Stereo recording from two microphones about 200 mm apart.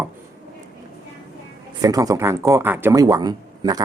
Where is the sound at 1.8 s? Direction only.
15° right (ahead or behind).